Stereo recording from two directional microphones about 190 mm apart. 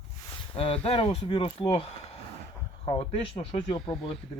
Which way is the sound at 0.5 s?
30° left (ahead or behind).